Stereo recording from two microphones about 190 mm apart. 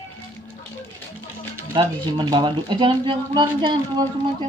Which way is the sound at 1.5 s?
25° right (ahead or behind).